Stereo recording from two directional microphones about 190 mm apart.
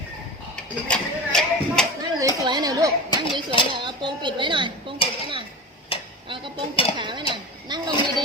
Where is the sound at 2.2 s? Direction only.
20° right (ahead or behind).